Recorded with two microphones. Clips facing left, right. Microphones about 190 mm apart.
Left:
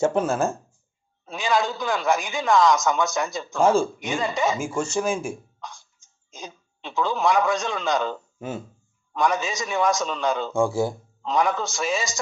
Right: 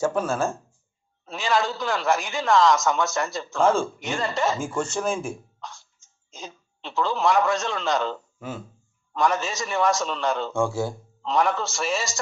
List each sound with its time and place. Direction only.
0.0 s speech: 20° left (ahead or behind)
2.8 s a man's voice: 5° right (ahead or behind)
3.4 s speech: 15° left (ahead or behind)
6.3 s a sound: 15° left (ahead or behind)
7.5 s speech: 15° left (ahead or behind)
9.5 s a man's voice: centre (ahead or behind)
10.3 s speech: 10° left (ahead or behind)
11.6 s a man's voice: 5° right (ahead or behind)